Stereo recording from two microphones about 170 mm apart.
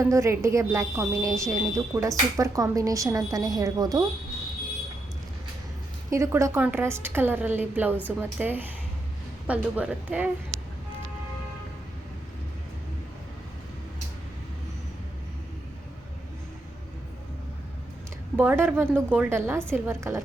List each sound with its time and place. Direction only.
0.0 s a woman's voice: 15° right (ahead or behind)
6.1 s a woman's voice: 15° right (ahead or behind)
18.3 s a woman's voice: 10° right (ahead or behind)